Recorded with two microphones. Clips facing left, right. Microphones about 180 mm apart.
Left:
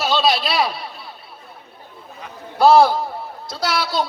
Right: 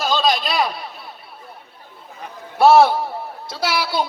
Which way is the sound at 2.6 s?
5° right (ahead or behind).